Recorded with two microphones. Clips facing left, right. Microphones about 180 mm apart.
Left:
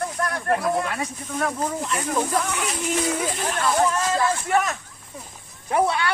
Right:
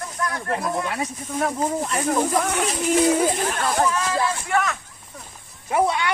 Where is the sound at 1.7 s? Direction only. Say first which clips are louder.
Right 3 dB; 45° right (ahead or behind).